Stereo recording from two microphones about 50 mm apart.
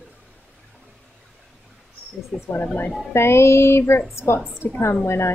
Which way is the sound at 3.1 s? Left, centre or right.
Left.